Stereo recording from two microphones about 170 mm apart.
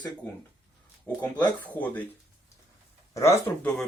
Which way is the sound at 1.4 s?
10° left (ahead or behind).